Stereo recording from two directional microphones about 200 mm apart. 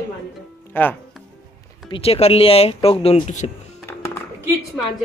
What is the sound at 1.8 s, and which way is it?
Speech, 25° left (ahead or behind).